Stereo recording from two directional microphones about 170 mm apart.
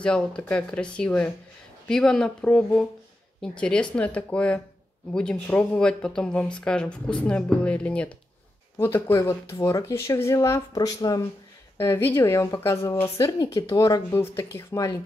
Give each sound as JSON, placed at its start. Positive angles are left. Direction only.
{"t": 0.0, "sound": "a woman's voice", "side_deg": 5}